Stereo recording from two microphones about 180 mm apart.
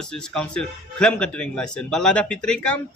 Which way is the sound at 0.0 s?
5° left (ahead or behind).